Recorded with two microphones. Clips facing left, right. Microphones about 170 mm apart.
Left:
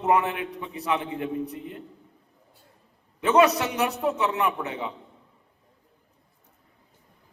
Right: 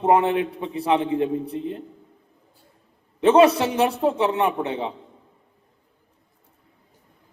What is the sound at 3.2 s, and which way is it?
A man's voice, 30° right (ahead or behind).